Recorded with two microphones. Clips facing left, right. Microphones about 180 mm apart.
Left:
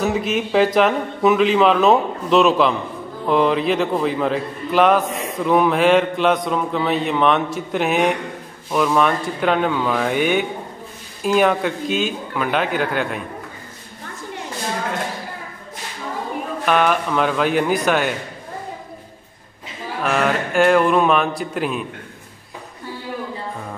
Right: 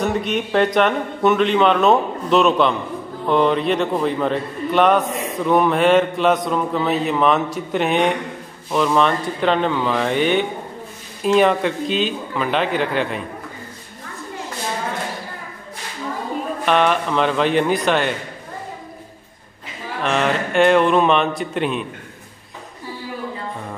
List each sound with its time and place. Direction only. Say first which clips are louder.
0.0 s a man's voice: left 1 dB; centre (ahead or behind)
16.6 s a man's voice: even; 5° left (ahead or behind)
20.0 s a man's voice: even; 5° left (ahead or behind)